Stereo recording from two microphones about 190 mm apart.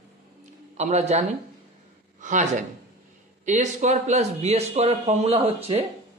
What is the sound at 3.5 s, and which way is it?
Speech, 40° right (ahead or behind).